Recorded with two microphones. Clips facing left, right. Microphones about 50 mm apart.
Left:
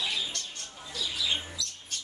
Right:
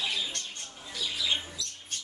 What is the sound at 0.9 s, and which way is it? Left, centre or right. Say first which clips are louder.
Squawk: even; right.